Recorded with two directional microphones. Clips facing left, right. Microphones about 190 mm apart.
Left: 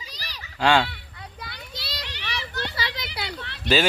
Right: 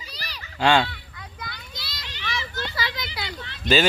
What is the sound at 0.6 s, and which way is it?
Speech, 5° left (ahead or behind).